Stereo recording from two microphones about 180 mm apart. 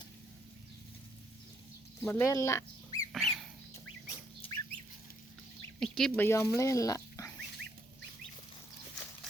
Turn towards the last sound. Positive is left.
turn(degrees=20)  # may be behind; listen again after turning